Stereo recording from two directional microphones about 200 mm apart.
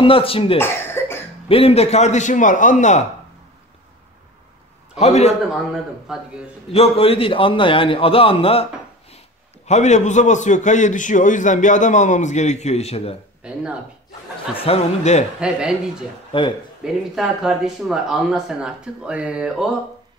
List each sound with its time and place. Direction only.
0.0 s a man's voice: 25° left (ahead or behind)
0.6 s cough: 10° left (ahead or behind)
1.5 s a man's voice: 30° left (ahead or behind)
4.9 s a man's voice: 30° left (ahead or behind)
6.7 s a man's voice: 30° left (ahead or behind)
9.7 s a man's voice: 35° left (ahead or behind)
13.4 s speech: 5° right (ahead or behind)
14.6 s a man's voice: 30° left (ahead or behind)
16.3 s speech: 25° left (ahead or behind)
16.8 s speech: centre (ahead or behind)